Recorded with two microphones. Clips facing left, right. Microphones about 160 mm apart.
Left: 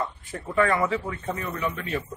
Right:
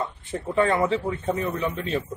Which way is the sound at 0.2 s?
25° right (ahead or behind).